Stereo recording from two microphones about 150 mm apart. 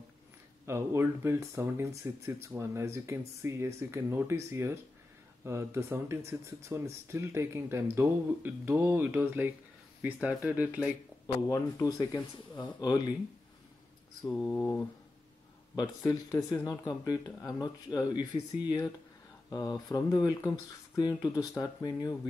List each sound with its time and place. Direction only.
0.7 s speech: 15° right (ahead or behind)
11.4 s speech: 20° left (ahead or behind)
14.2 s mantra: 15° left (ahead or behind)
15.7 s speech: 25° left (ahead or behind)